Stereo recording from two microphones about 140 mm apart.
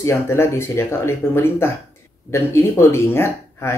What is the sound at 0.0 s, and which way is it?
Speech, 20° left (ahead or behind).